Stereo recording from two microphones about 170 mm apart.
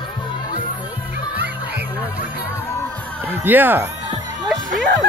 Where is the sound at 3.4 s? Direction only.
10° right (ahead or behind).